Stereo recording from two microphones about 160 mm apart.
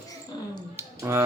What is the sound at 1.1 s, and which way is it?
Speech, 15° right (ahead or behind).